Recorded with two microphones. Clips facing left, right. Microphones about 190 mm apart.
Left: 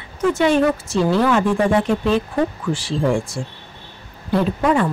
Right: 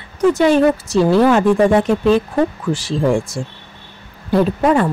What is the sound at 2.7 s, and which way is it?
Speech, 40° right (ahead or behind).